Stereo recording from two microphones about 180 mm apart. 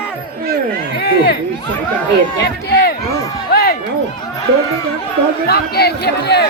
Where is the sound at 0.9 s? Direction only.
60° left (ahead or behind).